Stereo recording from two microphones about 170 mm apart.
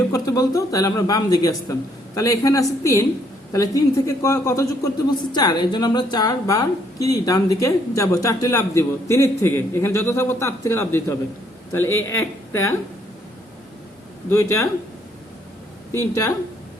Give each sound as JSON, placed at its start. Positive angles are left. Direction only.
{"t": 0.1, "sound": "a woman's voice", "side_deg": 20}
{"t": 14.3, "sound": "speech", "side_deg": 15}
{"t": 15.9, "sound": "a woman's voice", "side_deg": 20}